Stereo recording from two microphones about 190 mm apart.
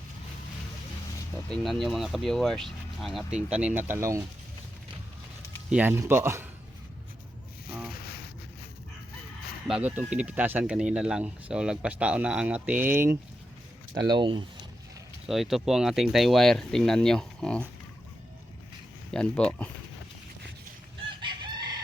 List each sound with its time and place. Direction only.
1.5 s speech: centre (ahead or behind); by 4.2 s 15° right (ahead or behind)
5.6 s speech: 10° right (ahead or behind)
8.0 s a sound: 55° left (ahead or behind)
9.6 s speech: 5° right (ahead or behind); by 14.4 s 25° right (ahead or behind)
15.3 s speech: centre (ahead or behind)
19.1 s speech: 5° left (ahead or behind)
21.2 s chicken: 25° right (ahead or behind)